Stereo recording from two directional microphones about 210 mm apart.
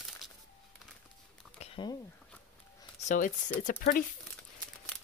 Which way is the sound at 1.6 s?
20° left (ahead or behind).